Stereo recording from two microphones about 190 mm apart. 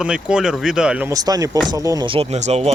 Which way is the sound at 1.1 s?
20° right (ahead or behind).